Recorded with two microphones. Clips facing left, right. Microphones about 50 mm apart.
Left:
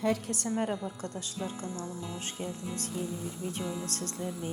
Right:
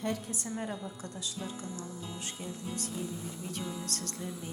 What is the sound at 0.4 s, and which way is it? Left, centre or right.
Speech, left.